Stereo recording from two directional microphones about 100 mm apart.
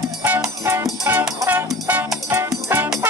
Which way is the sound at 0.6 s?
30° right (ahead or behind).